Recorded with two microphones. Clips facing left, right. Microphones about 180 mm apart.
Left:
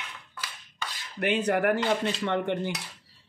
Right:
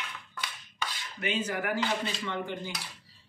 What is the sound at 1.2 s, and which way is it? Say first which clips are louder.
Speech: left 7 dB; 70° left (ahead or behind).